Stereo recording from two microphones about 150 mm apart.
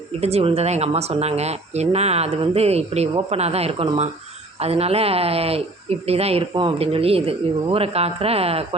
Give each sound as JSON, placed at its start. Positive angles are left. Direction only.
{"t": 0.2, "sound": "speech", "side_deg": -45}